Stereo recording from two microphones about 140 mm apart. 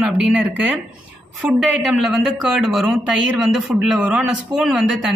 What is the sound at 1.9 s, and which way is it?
A woman's voice, centre (ahead or behind).